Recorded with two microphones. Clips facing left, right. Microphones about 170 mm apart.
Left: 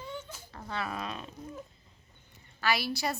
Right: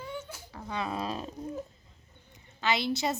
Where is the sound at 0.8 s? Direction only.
25° right (ahead or behind).